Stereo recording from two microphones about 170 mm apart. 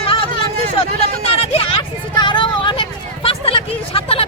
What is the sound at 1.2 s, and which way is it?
Vehicle, 35° left (ahead or behind).